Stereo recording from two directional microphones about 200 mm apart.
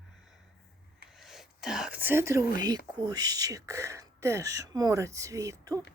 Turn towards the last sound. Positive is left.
turn(degrees=-15)  # may be behind; listen again after turning